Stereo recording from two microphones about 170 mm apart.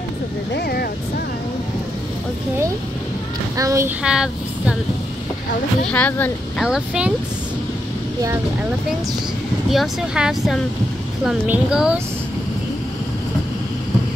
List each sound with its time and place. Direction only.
0.6 s vehicle: 65° left (ahead or behind)
3.5 s a child's voice: 20° right (ahead or behind)
4.0 s speech: 5° right (ahead or behind)
5.9 s speech: 10° left (ahead or behind)
6.6 s speech: 5° right (ahead or behind)
9.7 s a woman's voice: centre (ahead or behind)